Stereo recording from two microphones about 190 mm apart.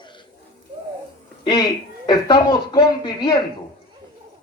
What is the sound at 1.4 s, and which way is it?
A woman's voice, 20° left (ahead or behind).